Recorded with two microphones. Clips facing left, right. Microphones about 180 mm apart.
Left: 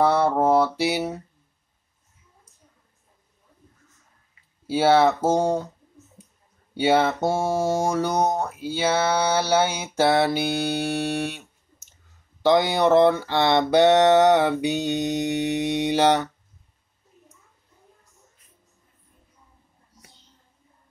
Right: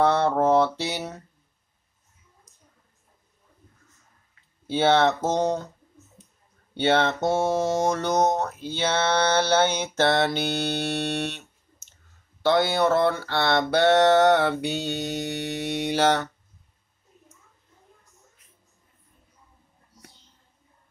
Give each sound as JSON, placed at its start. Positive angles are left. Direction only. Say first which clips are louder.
{"t": 0.0, "sound": "mantra", "louder": "left 1 dB", "side_deg": 10}
{"t": 4.6, "sound": "speech", "louder": "left 2 dB", "side_deg": 10}
{"t": 6.7, "sound": "speech", "louder": "left 2 dB", "side_deg": 10}
{"t": 12.4, "sound": "speech", "louder": "left 3 dB", "side_deg": 15}